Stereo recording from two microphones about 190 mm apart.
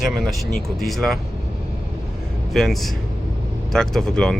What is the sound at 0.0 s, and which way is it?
Speech, centre (ahead or behind).